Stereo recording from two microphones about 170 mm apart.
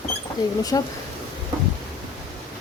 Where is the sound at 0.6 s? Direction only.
20° left (ahead or behind).